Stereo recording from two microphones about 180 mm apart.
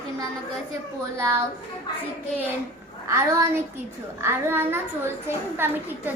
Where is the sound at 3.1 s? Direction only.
15° right (ahead or behind).